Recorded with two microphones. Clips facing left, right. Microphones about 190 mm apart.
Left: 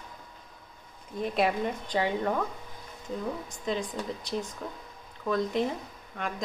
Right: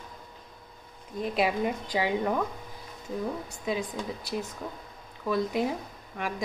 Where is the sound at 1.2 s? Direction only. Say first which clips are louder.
Even; centre (ahead or behind).